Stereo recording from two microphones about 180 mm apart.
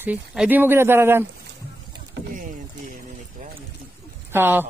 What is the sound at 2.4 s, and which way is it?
Vehicle, 50° right (ahead or behind).